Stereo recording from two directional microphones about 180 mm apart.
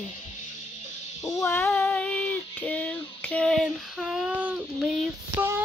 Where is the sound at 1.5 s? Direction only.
10° left (ahead or behind).